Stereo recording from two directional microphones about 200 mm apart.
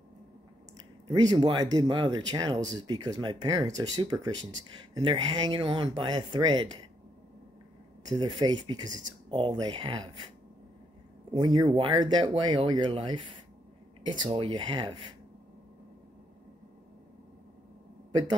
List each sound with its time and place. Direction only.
1.0 s speech: 20° right (ahead or behind)
8.1 s speech: 20° right (ahead or behind)
11.3 s speech: 20° right (ahead or behind)